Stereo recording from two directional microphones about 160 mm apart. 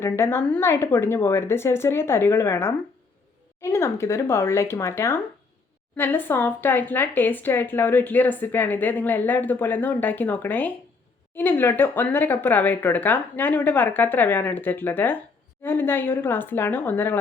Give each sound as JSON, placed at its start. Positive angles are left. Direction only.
{"t": 0.0, "sound": "speech", "side_deg": 15}